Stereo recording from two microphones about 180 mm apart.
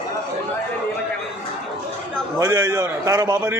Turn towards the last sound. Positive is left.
turn(degrees=-20)  # may be behind; listen again after turning